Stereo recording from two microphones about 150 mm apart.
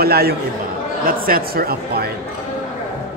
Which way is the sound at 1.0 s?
75° right (ahead or behind).